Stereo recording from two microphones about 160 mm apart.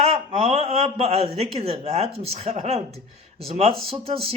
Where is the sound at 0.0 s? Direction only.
40° right (ahead or behind).